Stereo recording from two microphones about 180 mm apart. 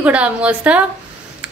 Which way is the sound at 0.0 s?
5° right (ahead or behind).